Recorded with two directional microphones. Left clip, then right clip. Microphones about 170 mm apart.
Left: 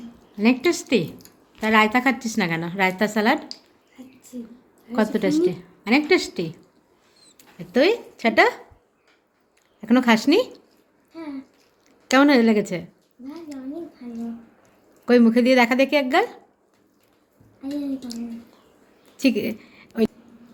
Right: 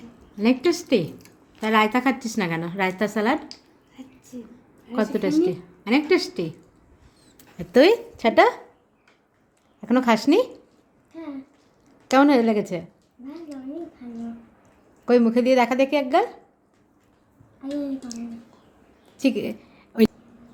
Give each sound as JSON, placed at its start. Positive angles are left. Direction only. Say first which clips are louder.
{"t": 0.3, "sound": "a woman's voice", "louder": "left 1 dB", "side_deg": 0}
{"t": 5.1, "sound": "a woman's voice", "louder": "right 1 dB", "side_deg": 0}
{"t": 7.3, "sound": "speech", "louder": "right 3 dB", "side_deg": -25}
{"t": 9.8, "sound": "a woman's voice", "louder": "left 1 dB", "side_deg": -5}
{"t": 12.0, "sound": "a woman's voice", "louder": "left 1 dB", "side_deg": 0}
{"t": 15.0, "sound": "a woman's voice", "louder": "left 1 dB", "side_deg": -5}
{"t": 19.1, "sound": "a sound", "louder": "left 2 dB", "side_deg": 0}